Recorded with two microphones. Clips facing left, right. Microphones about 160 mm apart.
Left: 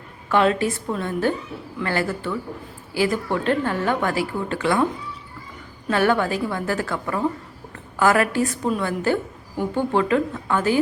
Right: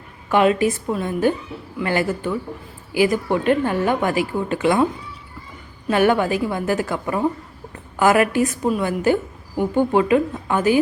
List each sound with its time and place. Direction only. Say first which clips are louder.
0.3 s a woman's voice: right 3 dB; 15° right (ahead or behind)
5.9 s a woman's voice: right 3 dB; 15° right (ahead or behind)